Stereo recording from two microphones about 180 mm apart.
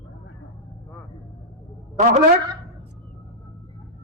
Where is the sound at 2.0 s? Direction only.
40° right (ahead or behind).